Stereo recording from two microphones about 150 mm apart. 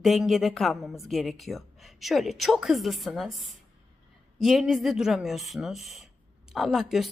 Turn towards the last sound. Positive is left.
turn(degrees=0)  # may be behind; listen again after turning